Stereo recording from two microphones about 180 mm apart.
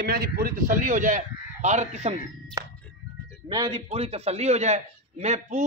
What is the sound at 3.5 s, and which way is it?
Speech, 25° right (ahead or behind).